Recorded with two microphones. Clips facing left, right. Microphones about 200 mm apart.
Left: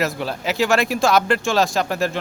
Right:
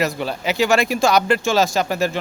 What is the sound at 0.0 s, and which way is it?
Speech, centre (ahead or behind).